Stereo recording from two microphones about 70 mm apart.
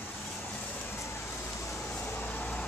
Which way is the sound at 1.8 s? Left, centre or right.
Left.